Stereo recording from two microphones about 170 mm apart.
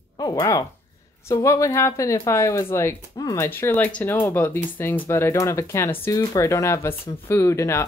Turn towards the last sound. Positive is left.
turn(degrees=15)  # may be behind; listen again after turning